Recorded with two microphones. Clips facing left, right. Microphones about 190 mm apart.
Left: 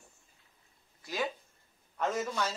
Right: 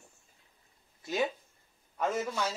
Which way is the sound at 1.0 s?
25° right (ahead or behind).